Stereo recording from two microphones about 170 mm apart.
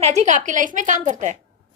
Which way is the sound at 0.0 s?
45° right (ahead or behind).